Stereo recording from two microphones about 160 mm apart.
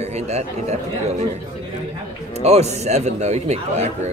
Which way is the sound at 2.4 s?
45° right (ahead or behind).